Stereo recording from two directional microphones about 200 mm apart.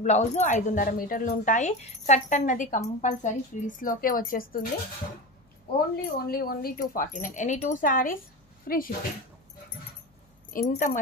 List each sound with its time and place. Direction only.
0.0 s a woman's voice: 35° left (ahead or behind)
6.0 s speech: 50° left (ahead or behind)
10.5 s speech: 45° left (ahead or behind)